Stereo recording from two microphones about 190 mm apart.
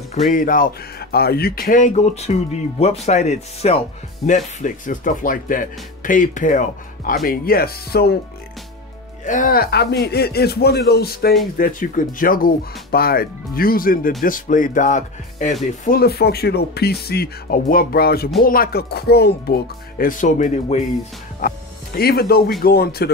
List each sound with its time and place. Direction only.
0.1 s speech: 40° left (ahead or behind); by 8.2 s 55° left (ahead or behind)
9.2 s speech: 45° left (ahead or behind)
15.8 s speech: 50° left (ahead or behind)
21.4 s speech: 50° left (ahead or behind)